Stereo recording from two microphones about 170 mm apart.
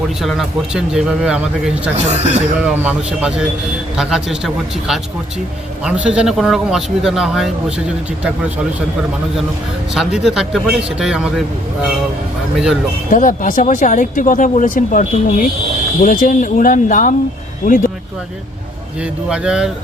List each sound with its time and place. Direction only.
0.2 s speech: centre (ahead or behind)
2.0 s speech: 40° right (ahead or behind)
2.6 s speech: 5° right (ahead or behind)
9.9 s speech: centre (ahead or behind)
13.1 s speech: 50° left (ahead or behind)
19.3 s speech: 5° right (ahead or behind)